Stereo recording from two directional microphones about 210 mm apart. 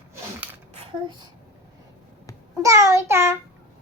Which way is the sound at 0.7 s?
25° right (ahead or behind).